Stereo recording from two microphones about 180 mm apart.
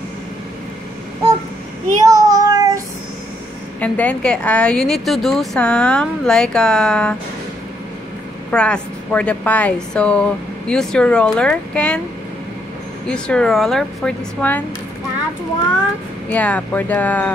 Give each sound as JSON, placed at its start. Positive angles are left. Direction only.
{"t": 2.0, "sound": "child singing", "side_deg": -20}
{"t": 3.8, "sound": "a woman's voice", "side_deg": 10}
{"t": 8.5, "sound": "a woman's voice", "side_deg": 5}
{"t": 13.1, "sound": "a woman's voice", "side_deg": 5}
{"t": 16.3, "sound": "speech", "side_deg": 10}